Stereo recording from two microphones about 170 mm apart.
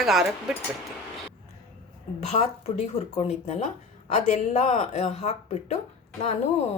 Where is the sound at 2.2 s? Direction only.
40° left (ahead or behind).